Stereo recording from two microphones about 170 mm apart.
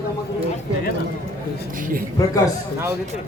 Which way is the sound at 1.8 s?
55° right (ahead or behind).